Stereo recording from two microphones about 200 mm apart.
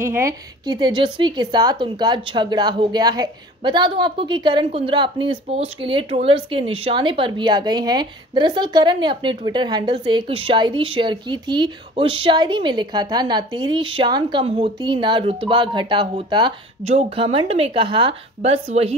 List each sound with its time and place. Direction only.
0.1 s a woman's voice: 15° right (ahead or behind)